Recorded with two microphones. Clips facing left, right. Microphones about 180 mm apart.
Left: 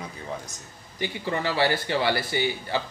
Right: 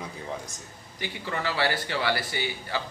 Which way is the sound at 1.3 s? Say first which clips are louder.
Left 3 dB; 20° left (ahead or behind).